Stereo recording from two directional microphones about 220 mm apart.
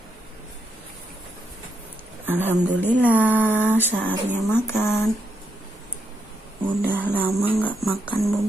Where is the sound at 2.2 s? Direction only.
10° right (ahead or behind).